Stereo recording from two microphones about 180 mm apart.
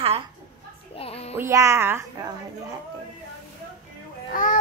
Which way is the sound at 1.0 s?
35° left (ahead or behind).